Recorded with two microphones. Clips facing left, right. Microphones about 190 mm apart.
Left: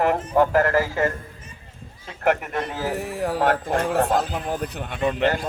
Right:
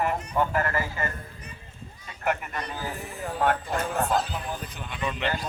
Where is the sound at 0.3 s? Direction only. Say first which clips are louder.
Left 8 dB; 90° left.